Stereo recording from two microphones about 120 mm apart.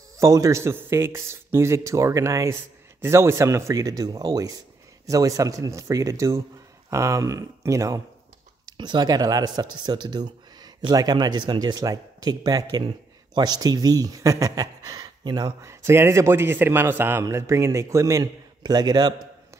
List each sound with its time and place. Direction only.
0.2 s a man's voice: 25° right (ahead or behind)
8.6 s speech: 40° right (ahead or behind)
15.6 s a man's voice: 20° right (ahead or behind)